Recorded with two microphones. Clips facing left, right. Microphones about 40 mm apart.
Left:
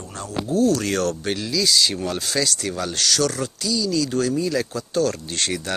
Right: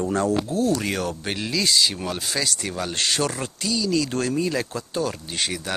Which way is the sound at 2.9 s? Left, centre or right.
Right.